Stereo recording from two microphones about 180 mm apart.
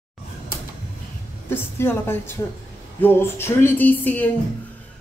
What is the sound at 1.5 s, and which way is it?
A woman's voice, 15° left (ahead or behind).